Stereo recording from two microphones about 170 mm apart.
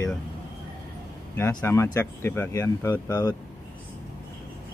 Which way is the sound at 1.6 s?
15° left (ahead or behind).